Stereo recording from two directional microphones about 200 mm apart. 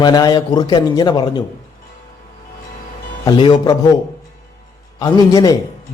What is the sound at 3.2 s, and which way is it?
Speech, 20° left (ahead or behind).